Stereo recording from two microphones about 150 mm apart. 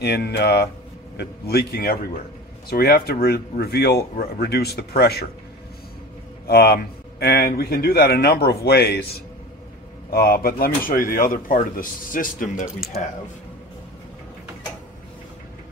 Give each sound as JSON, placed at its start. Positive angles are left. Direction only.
{"t": 0.0, "sound": "a man's voice", "side_deg": 90}
{"t": 6.4, "sound": "a man's voice", "side_deg": 90}
{"t": 10.9, "sound": "speech", "side_deg": 65}